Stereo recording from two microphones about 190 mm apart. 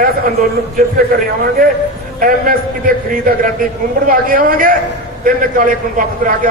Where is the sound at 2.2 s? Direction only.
50° right (ahead or behind).